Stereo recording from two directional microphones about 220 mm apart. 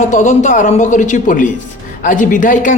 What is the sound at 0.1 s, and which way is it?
A man's voice, 35° left (ahead or behind).